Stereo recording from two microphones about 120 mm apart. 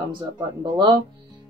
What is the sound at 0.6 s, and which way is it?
Speech, 35° right (ahead or behind).